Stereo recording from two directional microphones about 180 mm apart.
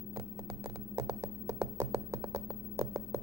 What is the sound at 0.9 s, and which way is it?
Computer keyboard, 20° right (ahead or behind).